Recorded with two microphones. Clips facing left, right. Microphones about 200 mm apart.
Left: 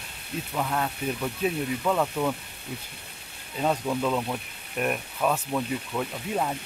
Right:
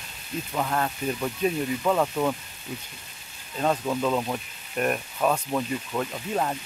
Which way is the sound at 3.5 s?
5° left (ahead or behind).